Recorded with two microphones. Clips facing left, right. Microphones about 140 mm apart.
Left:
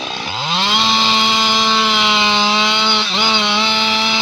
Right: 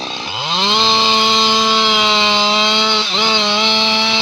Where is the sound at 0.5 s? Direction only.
25° right (ahead or behind).